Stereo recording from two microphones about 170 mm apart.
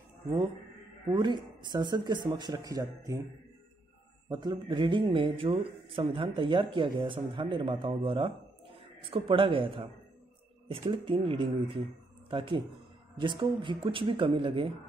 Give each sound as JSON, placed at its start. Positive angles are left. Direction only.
{"t": 1.0, "sound": "speech", "side_deg": -25}
{"t": 4.3, "sound": "a man's voice", "side_deg": -25}